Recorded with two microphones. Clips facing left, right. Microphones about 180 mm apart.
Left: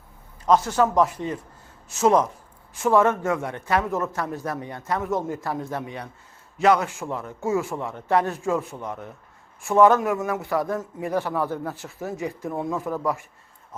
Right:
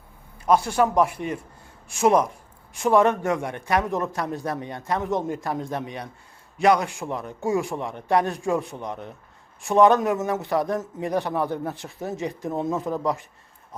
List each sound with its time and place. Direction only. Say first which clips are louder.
0.4 s a man's voice: even; 10° right (ahead or behind)